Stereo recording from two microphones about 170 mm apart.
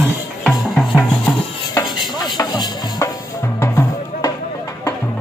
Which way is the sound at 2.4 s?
25° left (ahead or behind).